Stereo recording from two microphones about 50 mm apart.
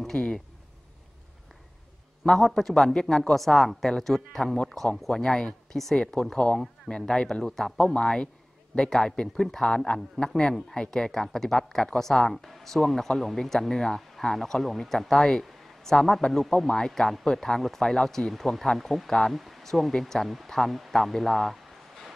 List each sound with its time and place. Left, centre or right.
0.0 s speech: centre
2.2 s speech: centre
7.7 s speech: left
15.4 s a sound: centre
16.2 s speech: centre